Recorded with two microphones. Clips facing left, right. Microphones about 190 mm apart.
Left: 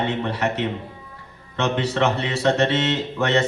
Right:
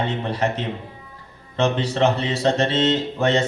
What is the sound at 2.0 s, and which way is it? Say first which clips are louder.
Speech: right 2 dB; 30° right (ahead or behind).